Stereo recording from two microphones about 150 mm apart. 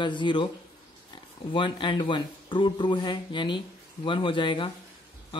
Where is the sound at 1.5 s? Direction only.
35° left (ahead or behind).